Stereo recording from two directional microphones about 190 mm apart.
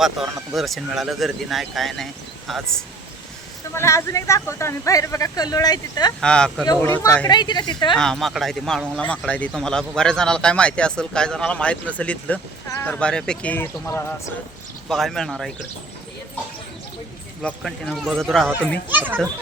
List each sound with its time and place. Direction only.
0.2 s speech: centre (ahead or behind)
3.8 s speech: 15° left (ahead or behind)
6.1 s speech: 5° left (ahead or behind)
7.3 s a woman's voice: 25° left (ahead or behind)
7.9 s speech: centre (ahead or behind)
14.8 s speech: centre (ahead or behind)
17.4 s speech: centre (ahead or behind)
18.9 s a child's voice: 10° right (ahead or behind)